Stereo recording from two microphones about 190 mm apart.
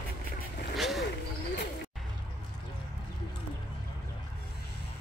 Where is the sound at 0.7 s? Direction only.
Centre (ahead or behind).